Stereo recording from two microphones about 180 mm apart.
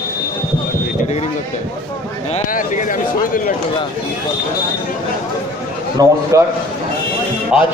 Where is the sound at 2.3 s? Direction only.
45° left (ahead or behind).